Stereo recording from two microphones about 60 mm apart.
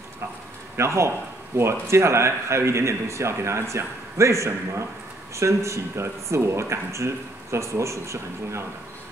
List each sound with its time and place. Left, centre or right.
0.7 s speech: right